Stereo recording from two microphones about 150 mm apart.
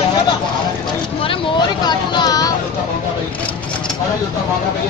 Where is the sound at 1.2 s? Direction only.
35° left (ahead or behind).